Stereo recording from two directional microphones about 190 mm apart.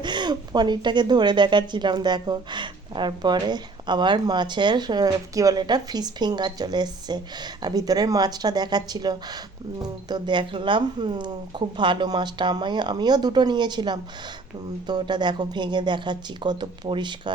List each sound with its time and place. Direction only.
0.0 s a woman's voice: 25° right (ahead or behind)